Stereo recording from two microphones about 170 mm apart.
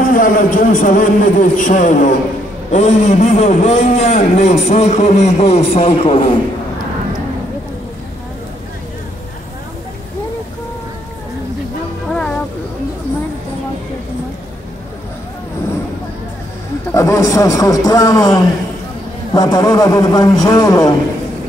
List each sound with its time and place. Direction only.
0.0 s a man's voice: 50° left (ahead or behind); by 6.3 s 35° left (ahead or behind)
12.1 s music: 5° left (ahead or behind)
16.9 s a man's voice: 20° left (ahead or behind)